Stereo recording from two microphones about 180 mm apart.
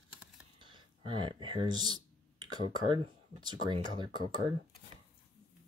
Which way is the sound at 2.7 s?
25° right (ahead or behind).